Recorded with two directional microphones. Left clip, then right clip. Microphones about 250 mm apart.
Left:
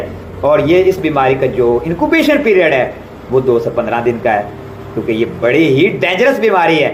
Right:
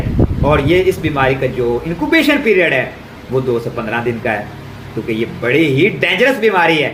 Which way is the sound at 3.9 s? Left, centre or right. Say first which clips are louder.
Left 2 dB; right.